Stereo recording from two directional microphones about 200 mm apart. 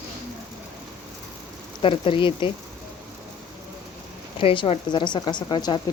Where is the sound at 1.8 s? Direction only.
25° left (ahead or behind).